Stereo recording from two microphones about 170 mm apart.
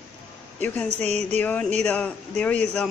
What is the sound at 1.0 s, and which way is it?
Speech, 40° right (ahead or behind).